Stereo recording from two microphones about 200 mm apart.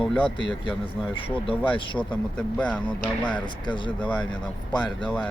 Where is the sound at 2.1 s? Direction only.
5° left (ahead or behind).